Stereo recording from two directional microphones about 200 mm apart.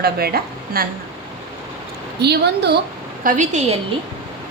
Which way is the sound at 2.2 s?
55° right (ahead or behind).